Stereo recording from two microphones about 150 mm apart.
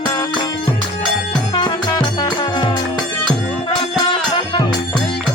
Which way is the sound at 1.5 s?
30° left (ahead or behind).